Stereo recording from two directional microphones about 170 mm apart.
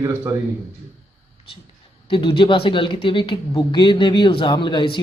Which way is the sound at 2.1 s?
30° left (ahead or behind).